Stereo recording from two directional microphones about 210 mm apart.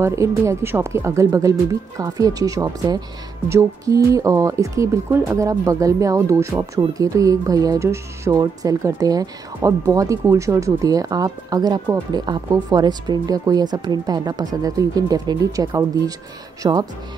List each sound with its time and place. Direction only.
0.0 s speech: 15° right (ahead or behind)